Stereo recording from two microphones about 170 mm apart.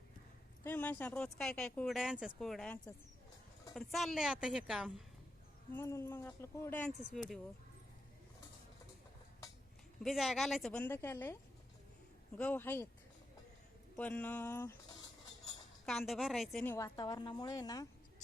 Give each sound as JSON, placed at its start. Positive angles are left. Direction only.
{"t": 0.6, "sound": "speech", "side_deg": 10}
{"t": 3.8, "sound": "speech", "side_deg": 0}
{"t": 5.7, "sound": "speech", "side_deg": 15}
{"t": 7.0, "sound": "speech", "side_deg": 0}
{"t": 10.0, "sound": "speech", "side_deg": 0}
{"t": 12.4, "sound": "speech", "side_deg": 10}
{"t": 13.9, "sound": "speech", "side_deg": 10}
{"t": 15.9, "sound": "speech", "side_deg": 0}
{"t": 16.6, "sound": "a woman's voice", "side_deg": 20}